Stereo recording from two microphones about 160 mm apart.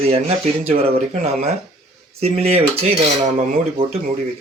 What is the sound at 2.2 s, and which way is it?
Speech, 40° right (ahead or behind).